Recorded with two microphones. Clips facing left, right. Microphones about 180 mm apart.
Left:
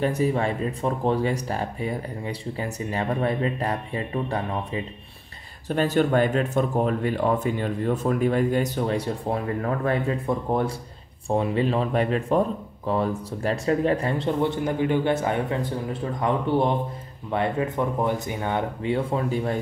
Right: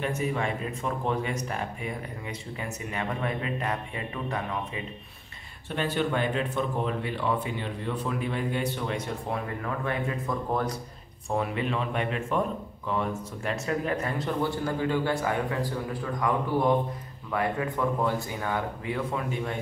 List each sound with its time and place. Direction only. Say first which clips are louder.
0.0 s speech: left 6 dB; 35° left (ahead or behind)